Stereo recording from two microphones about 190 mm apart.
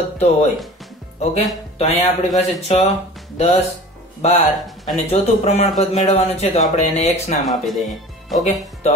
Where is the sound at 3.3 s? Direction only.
35° left (ahead or behind).